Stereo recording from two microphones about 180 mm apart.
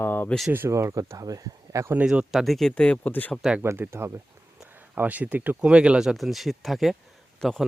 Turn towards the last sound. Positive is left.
turn(degrees=5)  # may be behind; listen again after turning